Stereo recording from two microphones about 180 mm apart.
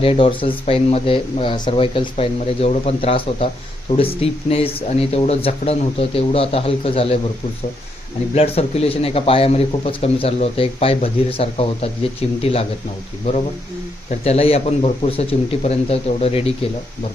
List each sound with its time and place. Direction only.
0.0 s a man's voice: 30° left (ahead or behind)
8.4 s a man's voice: 35° left (ahead or behind)
14.1 s a man's voice: 35° left (ahead or behind)